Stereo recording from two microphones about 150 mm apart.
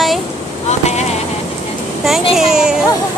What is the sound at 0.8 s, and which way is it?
Vehicle, 45° left (ahead or behind).